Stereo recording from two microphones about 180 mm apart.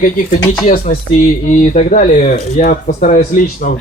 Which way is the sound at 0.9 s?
35° left (ahead or behind).